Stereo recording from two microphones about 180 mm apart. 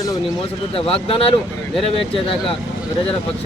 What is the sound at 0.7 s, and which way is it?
Speech, 30° left (ahead or behind).